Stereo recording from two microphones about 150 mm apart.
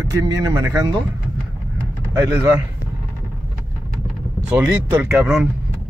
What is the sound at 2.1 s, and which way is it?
Speech, 15° right (ahead or behind).